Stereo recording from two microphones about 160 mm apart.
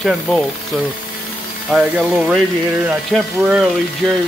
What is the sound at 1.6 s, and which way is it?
Speech, centre (ahead or behind).